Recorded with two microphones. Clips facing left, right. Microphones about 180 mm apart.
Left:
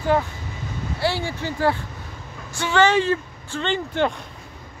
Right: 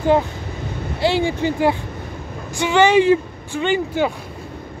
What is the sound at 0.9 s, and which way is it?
Speech, 20° right (ahead or behind).